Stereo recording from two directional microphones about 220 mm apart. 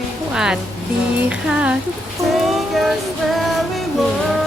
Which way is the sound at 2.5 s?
Centre (ahead or behind).